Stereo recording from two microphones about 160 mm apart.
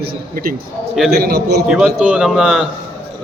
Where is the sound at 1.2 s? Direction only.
70° right (ahead or behind).